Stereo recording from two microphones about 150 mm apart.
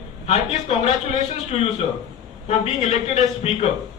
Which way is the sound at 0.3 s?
45° left (ahead or behind).